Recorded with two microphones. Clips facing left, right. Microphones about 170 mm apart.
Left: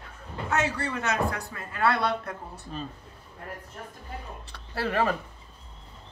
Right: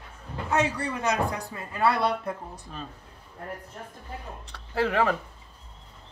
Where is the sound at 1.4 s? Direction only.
25° right (ahead or behind).